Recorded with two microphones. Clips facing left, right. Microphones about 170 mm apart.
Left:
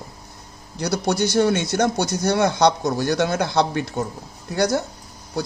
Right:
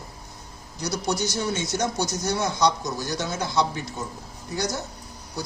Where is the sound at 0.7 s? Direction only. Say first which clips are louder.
Left 5 dB; 60° left (ahead or behind).